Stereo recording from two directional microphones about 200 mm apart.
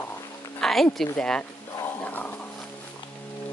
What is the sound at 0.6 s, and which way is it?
Speech, centre (ahead or behind).